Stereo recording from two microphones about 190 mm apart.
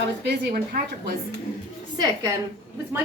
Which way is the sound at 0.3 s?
55° right (ahead or behind).